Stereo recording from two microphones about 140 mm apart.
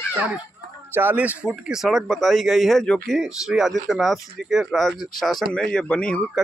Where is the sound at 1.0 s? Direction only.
10° right (ahead or behind); by 6.4 s 5° left (ahead or behind).